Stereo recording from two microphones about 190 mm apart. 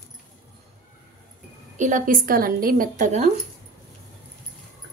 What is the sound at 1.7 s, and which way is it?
A woman's voice, 40° right (ahead or behind).